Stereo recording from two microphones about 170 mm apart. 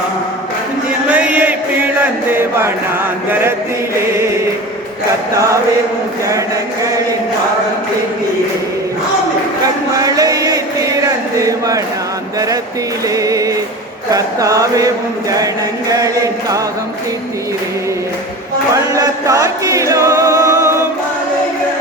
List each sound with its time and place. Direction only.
1.0 s chant: 10° right (ahead or behind)
2.3 s speech: 15° right (ahead or behind)
5.3 s chant: 20° right (ahead or behind)
9.9 s speech: 20° right (ahead or behind)
13.1 s chant: 20° right (ahead or behind)
15.9 s chant: 20° right (ahead or behind)
18.7 s music: 20° right (ahead or behind)